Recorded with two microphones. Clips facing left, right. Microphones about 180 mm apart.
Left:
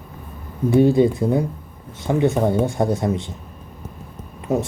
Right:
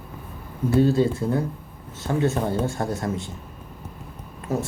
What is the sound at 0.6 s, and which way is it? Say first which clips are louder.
Speech: left 4 dB; 15° left (ahead or behind).